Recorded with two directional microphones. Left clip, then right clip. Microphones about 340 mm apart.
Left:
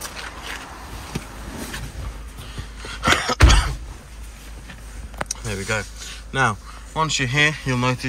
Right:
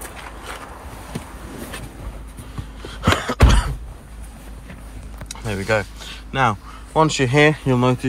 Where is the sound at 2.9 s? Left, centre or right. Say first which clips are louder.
Left 2 dB; centre.